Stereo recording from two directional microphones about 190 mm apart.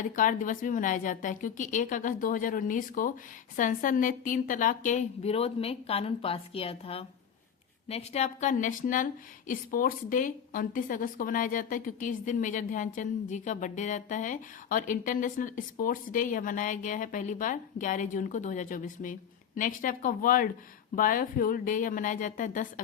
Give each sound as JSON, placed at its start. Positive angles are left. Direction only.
{"t": 0.0, "sound": "a woman's voice", "side_deg": 45}